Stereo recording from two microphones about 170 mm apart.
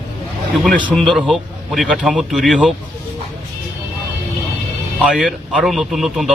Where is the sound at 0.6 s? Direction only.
5° left (ahead or behind).